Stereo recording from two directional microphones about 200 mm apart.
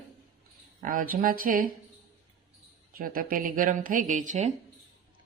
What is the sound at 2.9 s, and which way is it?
Speech, 45° right (ahead or behind).